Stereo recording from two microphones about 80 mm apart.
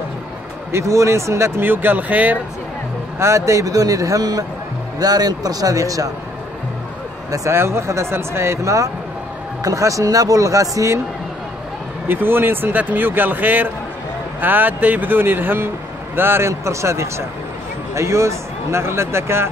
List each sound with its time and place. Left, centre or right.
0.7 s speech: right
1.6 s speech: right
3.2 s speech: right
7.2 s speech: right
12.1 s speech: right